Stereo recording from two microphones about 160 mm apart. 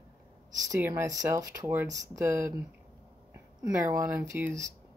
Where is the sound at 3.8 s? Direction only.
15° right (ahead or behind).